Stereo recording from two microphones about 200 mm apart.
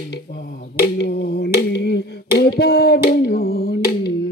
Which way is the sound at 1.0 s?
55° left (ahead or behind).